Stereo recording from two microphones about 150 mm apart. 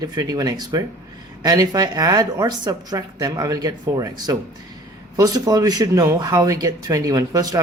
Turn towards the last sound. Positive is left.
turn(degrees=-25)  # may be behind; listen again after turning